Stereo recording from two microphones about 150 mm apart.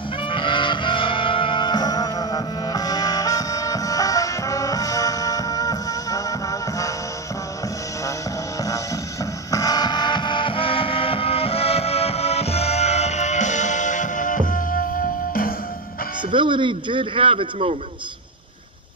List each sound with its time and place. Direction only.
0.3 s music: 35° left (ahead or behind)
8.6 s music: 20° left (ahead or behind); by 15.5 s 70° left (ahead or behind)
16.2 s speech: 30° right (ahead or behind)